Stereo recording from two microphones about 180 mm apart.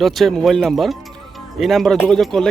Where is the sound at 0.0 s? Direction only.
Centre (ahead or behind).